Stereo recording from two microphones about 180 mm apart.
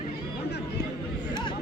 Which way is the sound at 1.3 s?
25° left (ahead or behind).